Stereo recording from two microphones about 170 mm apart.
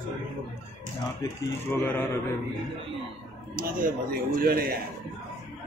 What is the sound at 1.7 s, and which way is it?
Speech, 10° left (ahead or behind).